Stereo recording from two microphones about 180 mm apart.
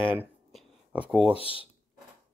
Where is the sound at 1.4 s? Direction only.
30° left (ahead or behind).